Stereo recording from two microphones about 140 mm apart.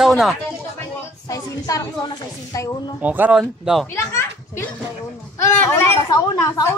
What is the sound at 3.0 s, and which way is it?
Speech, 10° right (ahead or behind).